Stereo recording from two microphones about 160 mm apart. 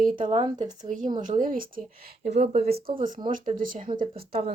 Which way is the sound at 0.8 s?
50° right (ahead or behind).